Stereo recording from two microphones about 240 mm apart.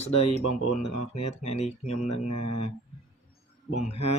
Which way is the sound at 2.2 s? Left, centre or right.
Left.